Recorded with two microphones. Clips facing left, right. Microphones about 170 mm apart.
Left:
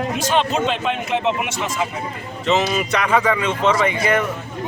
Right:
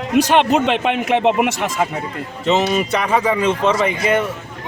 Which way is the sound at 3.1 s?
25° right (ahead or behind).